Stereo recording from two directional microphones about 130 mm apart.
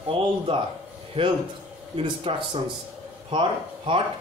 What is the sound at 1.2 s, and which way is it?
A man's voice, 45° right (ahead or behind).